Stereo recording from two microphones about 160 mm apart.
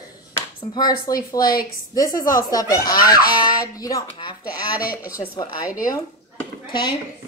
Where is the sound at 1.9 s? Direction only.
20° left (ahead or behind).